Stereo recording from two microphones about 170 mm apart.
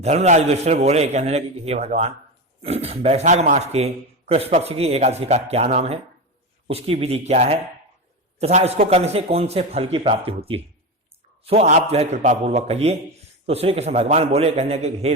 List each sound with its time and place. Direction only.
0.0 s a man's voice: 40° right (ahead or behind)